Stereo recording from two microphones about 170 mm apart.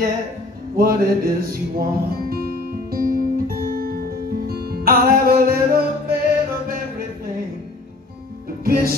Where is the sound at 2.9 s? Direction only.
60° right (ahead or behind).